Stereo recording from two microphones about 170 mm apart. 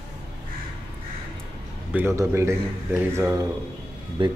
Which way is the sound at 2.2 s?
15° right (ahead or behind).